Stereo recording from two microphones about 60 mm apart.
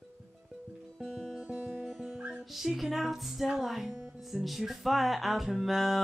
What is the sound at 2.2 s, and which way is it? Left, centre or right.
Speech, centre.